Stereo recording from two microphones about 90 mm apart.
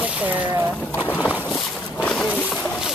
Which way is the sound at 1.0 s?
20° left (ahead or behind).